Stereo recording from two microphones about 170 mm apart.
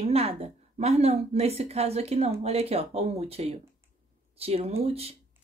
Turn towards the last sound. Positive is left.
turn(degrees=-35)  # may be behind; listen again after turning